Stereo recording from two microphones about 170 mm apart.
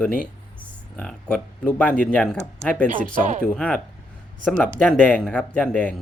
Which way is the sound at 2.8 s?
50° right (ahead or behind).